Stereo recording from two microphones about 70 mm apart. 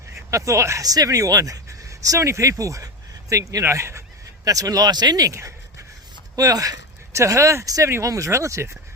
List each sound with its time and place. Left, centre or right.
0.3 s speech: right
0.9 s speech: right
3.6 s speech: right
4.4 s speech: right